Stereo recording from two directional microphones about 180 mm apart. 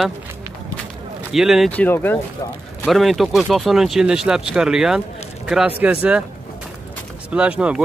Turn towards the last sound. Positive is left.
turn(degrees=-5)  # may be behind; listen again after turning